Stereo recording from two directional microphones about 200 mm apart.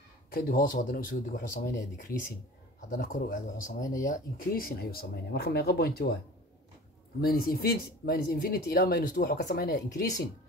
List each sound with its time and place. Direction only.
0.3 s speech: 45° left (ahead or behind)
7.2 s speech: 50° left (ahead or behind)